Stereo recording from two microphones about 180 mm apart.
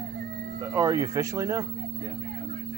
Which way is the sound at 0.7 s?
20° right (ahead or behind).